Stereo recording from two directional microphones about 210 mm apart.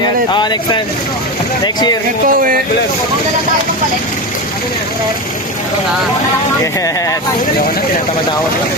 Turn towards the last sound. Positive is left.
turn(degrees=15)  # may be behind; listen again after turning